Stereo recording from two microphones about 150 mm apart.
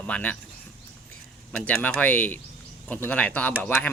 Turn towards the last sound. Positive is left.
turn(degrees=10)  # may be behind; listen again after turning